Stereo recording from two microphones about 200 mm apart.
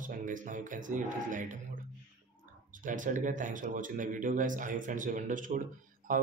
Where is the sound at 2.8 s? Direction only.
40° right (ahead or behind).